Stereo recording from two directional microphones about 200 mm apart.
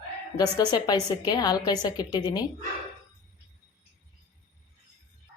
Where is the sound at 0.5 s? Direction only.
20° left (ahead or behind).